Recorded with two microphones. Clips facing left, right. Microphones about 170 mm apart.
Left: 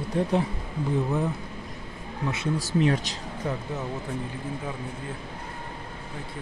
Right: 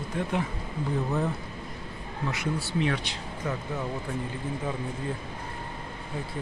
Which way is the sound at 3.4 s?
30° left (ahead or behind).